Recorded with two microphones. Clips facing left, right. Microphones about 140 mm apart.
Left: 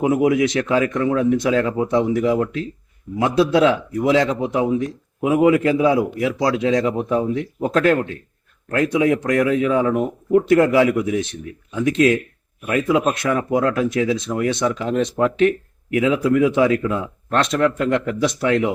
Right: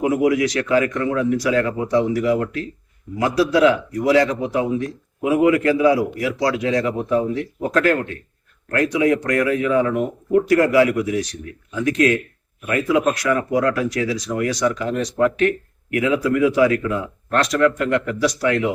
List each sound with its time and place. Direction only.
0.0 s speech: 25° left (ahead or behind)